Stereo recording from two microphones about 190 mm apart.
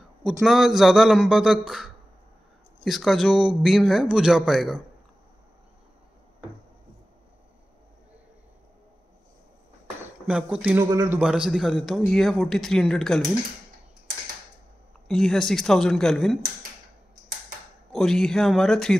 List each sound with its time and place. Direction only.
0.4 s a man's voice: centre (ahead or behind)
10.2 s a man's voice: 5° right (ahead or behind)
10.9 s a man's voice: 20° right (ahead or behind)
11.1 s a man's voice: 5° right (ahead or behind)
15.0 s a man's voice: centre (ahead or behind)
17.9 s a man's voice: centre (ahead or behind)